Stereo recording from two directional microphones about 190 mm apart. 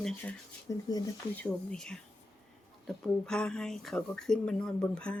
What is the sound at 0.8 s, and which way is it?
Speech, 20° left (ahead or behind).